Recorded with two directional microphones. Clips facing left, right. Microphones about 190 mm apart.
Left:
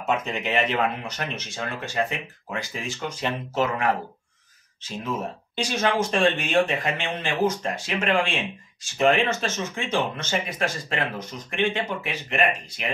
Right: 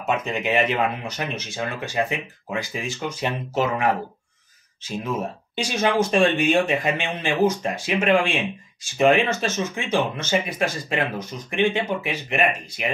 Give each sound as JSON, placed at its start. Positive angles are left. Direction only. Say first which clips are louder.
{"t": 0.0, "sound": "speech", "louder": "right 2 dB", "side_deg": -5}
{"t": 5.6, "sound": "speech", "louder": "right 2 dB", "side_deg": -10}